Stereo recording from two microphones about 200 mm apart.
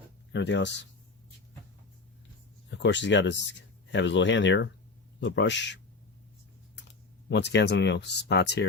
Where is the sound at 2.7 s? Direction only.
60° left (ahead or behind).